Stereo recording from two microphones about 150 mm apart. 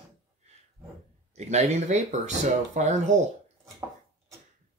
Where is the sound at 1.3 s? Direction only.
50° right (ahead or behind).